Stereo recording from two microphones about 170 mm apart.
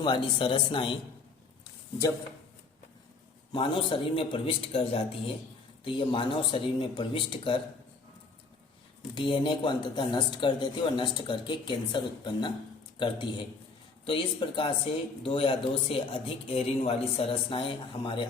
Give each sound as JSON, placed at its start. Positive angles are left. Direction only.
{"t": 0.0, "sound": "speech", "side_deg": 30}
{"t": 3.5, "sound": "speech", "side_deg": 30}
{"t": 9.1, "sound": "speech", "side_deg": 30}